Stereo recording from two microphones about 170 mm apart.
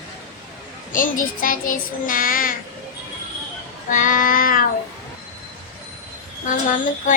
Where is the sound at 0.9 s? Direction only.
55° left (ahead or behind).